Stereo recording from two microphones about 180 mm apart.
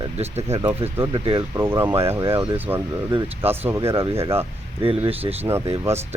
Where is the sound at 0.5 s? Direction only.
30° right (ahead or behind).